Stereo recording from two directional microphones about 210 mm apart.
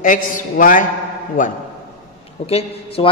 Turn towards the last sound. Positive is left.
turn(degrees=30)  # may be behind; listen again after turning